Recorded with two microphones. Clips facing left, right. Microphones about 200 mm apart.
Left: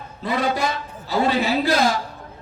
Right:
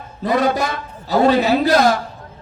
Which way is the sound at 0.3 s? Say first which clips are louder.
Right 5 dB; 45° right (ahead or behind).